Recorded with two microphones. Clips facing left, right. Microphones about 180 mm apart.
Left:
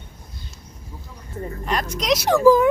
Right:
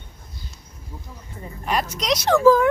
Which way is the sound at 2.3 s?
15° left (ahead or behind).